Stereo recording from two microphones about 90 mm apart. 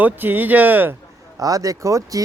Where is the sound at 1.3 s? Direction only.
40° right (ahead or behind).